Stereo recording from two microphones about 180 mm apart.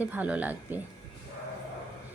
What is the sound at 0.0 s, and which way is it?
Speech, 10° right (ahead or behind).